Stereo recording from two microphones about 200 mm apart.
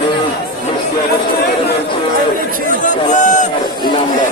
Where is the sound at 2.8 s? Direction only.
40° left (ahead or behind).